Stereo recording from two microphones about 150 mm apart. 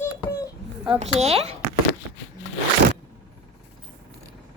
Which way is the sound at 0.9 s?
45° right (ahead or behind).